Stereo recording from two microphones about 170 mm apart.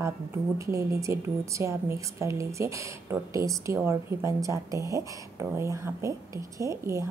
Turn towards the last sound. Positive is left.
turn(degrees=-15)  # may be behind; listen again after turning